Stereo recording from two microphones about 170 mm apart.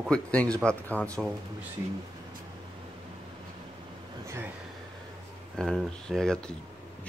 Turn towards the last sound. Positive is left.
turn(degrees=5)  # may be behind; listen again after turning